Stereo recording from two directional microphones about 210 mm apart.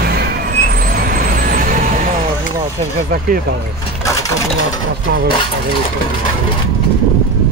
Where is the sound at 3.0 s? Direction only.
45° right (ahead or behind).